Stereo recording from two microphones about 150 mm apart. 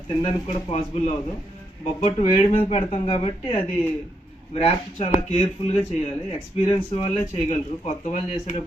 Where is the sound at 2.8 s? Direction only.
35° left (ahead or behind); by 8.6 s 50° left (ahead or behind).